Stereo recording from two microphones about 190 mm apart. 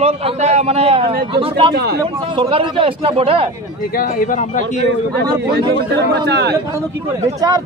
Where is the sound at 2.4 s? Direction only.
25° right (ahead or behind).